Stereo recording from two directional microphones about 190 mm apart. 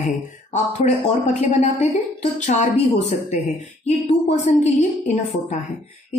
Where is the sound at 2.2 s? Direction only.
40° left (ahead or behind).